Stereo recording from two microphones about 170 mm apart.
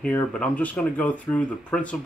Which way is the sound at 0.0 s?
5° left (ahead or behind).